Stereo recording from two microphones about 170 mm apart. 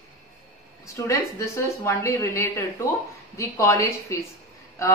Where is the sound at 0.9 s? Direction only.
15° left (ahead or behind).